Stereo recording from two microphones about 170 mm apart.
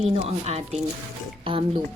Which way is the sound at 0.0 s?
40° right (ahead or behind).